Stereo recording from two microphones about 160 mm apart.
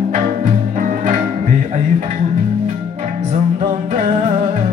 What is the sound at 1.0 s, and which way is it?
Music, 50° right (ahead or behind).